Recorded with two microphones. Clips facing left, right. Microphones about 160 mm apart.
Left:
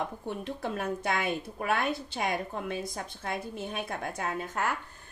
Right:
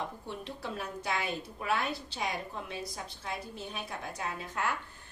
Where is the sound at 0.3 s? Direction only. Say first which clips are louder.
Left 5 dB; 50° left (ahead or behind).